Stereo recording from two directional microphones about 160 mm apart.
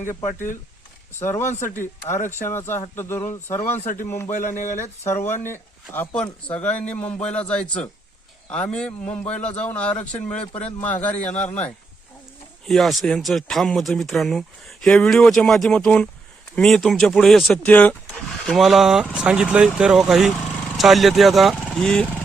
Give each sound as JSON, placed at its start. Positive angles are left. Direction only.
{"t": 0.0, "sound": "speech", "side_deg": 55}
{"t": 1.2, "sound": "a man's voice", "side_deg": 15}
{"t": 1.5, "sound": "speech", "side_deg": 50}
{"t": 1.7, "sound": "a man's voice", "side_deg": 15}
{"t": 4.3, "sound": "speech", "side_deg": 55}
{"t": 5.0, "sound": "a man's voice", "side_deg": 15}
{"t": 12.6, "sound": "speech", "side_deg": 0}